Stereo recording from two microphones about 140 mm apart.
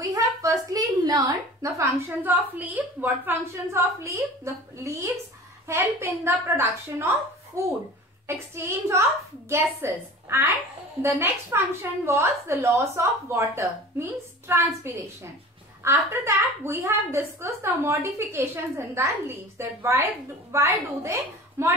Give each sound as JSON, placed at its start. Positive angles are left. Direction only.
{"t": 0.0, "sound": "a woman's voice", "side_deg": -25}
{"t": 5.7, "sound": "a woman's voice", "side_deg": -20}